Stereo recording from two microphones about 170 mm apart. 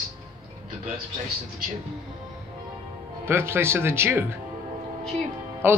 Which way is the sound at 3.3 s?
15° right (ahead or behind).